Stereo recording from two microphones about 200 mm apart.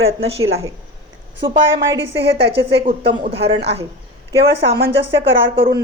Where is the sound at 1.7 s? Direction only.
60° right (ahead or behind).